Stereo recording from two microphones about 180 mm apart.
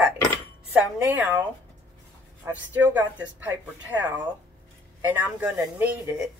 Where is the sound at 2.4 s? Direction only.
10° right (ahead or behind).